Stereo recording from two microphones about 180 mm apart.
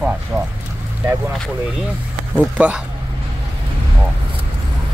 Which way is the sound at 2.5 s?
5° right (ahead or behind).